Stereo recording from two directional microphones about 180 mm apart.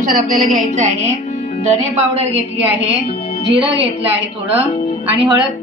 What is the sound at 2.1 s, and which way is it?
A woman's voice, 30° right (ahead or behind).